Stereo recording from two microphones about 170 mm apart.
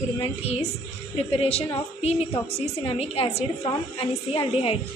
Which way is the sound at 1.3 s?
35° left (ahead or behind).